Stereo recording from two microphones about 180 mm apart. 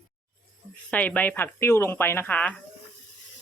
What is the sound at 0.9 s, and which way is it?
Speech, 10° left (ahead or behind).